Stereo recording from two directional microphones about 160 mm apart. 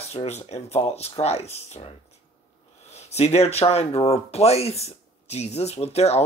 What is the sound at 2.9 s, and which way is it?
Speech, 45° left (ahead or behind).